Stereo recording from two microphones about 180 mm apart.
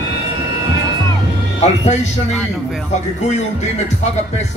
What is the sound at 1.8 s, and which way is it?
A man's voice, 40° left (ahead or behind).